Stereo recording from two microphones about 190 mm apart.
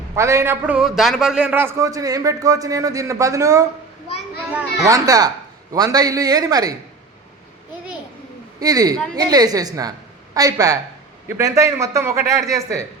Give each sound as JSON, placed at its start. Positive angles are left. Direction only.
{"t": 0.1, "sound": "a man's voice", "side_deg": -15}
{"t": 4.9, "sound": "a man's voice", "side_deg": -20}
{"t": 8.5, "sound": "a man's voice", "side_deg": -20}